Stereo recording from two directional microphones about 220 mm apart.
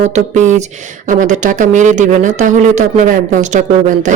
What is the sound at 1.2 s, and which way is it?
Speech, 35° right (ahead or behind).